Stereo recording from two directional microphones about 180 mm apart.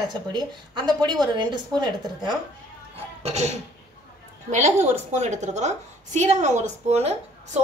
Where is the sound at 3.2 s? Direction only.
35° right (ahead or behind).